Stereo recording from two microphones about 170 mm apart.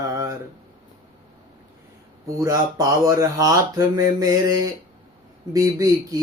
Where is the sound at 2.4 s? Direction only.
20° right (ahead or behind).